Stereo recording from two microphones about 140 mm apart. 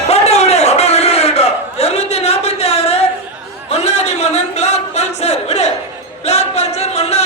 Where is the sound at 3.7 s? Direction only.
50° left (ahead or behind).